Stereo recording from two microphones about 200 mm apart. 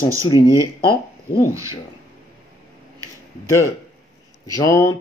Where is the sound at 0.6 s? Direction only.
25° left (ahead or behind).